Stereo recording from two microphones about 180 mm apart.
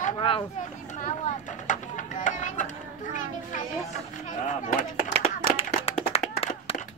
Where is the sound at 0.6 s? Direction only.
45° left (ahead or behind).